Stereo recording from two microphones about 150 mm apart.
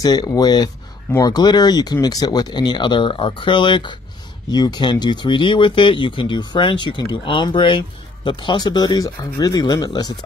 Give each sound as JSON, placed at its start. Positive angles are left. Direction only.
{"t": 0.0, "sound": "speech", "side_deg": 25}